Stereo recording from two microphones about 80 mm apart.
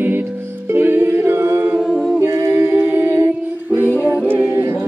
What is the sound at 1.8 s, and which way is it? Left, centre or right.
Humming, centre.